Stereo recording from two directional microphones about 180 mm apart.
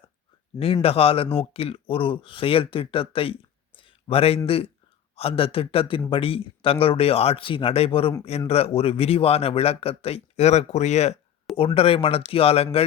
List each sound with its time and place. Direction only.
0.6 s speech: 35° left (ahead or behind)
3.8 s a sound: 30° left (ahead or behind)
4.4 s speech: 30° left (ahead or behind)